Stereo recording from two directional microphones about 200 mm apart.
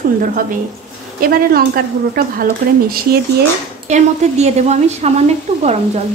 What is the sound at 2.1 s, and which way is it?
A woman's voice, 45° right (ahead or behind).